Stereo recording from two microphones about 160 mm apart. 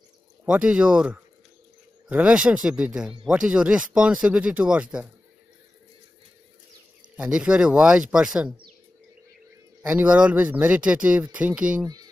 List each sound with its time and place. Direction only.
0.5 s speech: 5° right (ahead or behind)
7.2 s speech: 5° right (ahead or behind)
9.8 s speech: 5° right (ahead or behind)
11.8 s speech: 25° right (ahead or behind)